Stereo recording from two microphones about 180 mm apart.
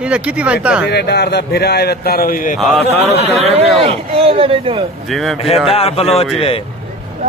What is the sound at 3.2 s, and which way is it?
Speech, 35° right (ahead or behind).